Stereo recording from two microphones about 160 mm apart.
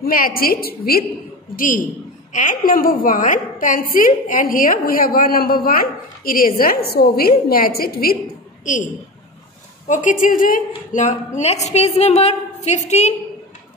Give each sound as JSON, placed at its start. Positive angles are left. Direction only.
{"t": 0.0, "sound": "a woman's voice", "side_deg": 65}
{"t": 2.3, "sound": "a woman's voice", "side_deg": 55}
{"t": 9.8, "sound": "a woman's voice", "side_deg": 50}